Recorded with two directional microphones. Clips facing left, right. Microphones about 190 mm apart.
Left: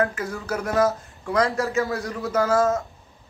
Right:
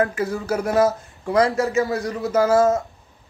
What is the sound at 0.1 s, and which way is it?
Speech, 25° right (ahead or behind).